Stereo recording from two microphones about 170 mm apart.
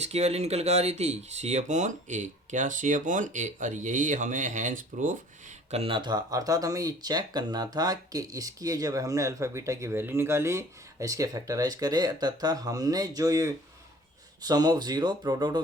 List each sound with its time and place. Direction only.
0.0 s speech: 40° right (ahead or behind)
5.7 s speech: 30° right (ahead or behind)